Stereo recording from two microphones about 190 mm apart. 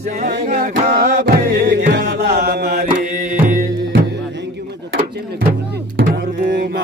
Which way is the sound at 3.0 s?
45° right (ahead or behind).